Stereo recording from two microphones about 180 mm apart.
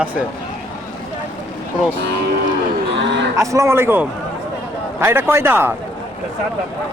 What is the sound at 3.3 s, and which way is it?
A man's voice, 15° right (ahead or behind).